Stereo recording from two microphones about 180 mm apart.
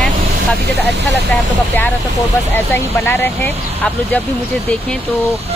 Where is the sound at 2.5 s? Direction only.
15° left (ahead or behind).